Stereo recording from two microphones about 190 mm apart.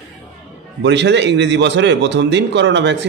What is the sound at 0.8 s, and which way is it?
A man's voice, 65° right (ahead or behind).